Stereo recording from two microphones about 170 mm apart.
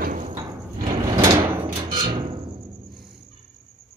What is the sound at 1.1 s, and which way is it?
Drawer open or close, 15° right (ahead or behind).